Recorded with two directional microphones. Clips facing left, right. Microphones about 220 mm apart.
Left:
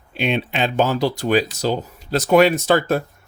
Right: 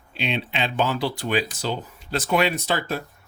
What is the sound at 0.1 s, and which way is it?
Speech, 50° left (ahead or behind).